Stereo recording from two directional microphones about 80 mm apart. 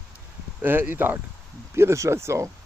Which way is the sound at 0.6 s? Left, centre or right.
Right.